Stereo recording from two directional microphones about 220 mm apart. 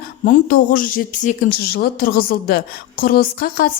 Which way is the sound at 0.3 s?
40° left (ahead or behind).